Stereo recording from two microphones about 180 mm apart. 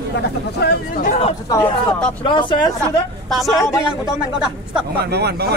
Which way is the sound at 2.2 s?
25° left (ahead or behind).